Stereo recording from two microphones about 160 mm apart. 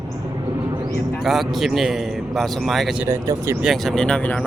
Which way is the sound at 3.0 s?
15° right (ahead or behind).